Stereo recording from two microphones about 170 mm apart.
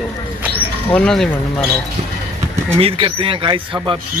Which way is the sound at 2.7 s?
35° right (ahead or behind).